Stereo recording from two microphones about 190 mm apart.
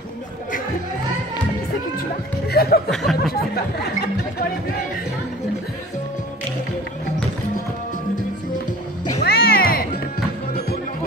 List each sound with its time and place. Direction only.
2.0 s music: 55° left (ahead or behind)
2.9 s a sound: centre (ahead or behind)
9.2 s music: 55° left (ahead or behind)